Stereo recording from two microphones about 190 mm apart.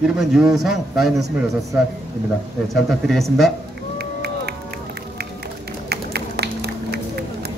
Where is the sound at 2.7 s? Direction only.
Centre (ahead or behind).